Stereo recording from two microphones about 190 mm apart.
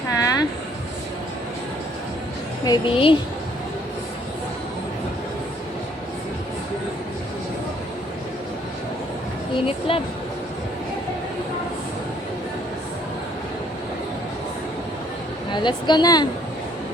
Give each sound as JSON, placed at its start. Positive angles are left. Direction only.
{"t": 0.1, "sound": "a sound", "side_deg": 20}
{"t": 2.6, "sound": "speech", "side_deg": 25}
{"t": 9.6, "sound": "speech", "side_deg": 30}
{"t": 15.5, "sound": "speech", "side_deg": 25}